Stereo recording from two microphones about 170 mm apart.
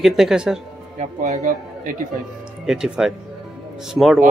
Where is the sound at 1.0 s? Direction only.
45° right (ahead or behind).